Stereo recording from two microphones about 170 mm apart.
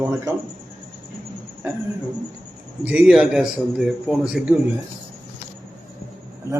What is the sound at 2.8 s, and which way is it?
A man's voice, 5° right (ahead or behind).